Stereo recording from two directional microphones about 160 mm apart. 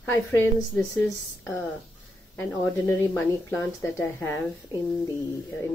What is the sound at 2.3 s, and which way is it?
A woman's voice, 10° left (ahead or behind).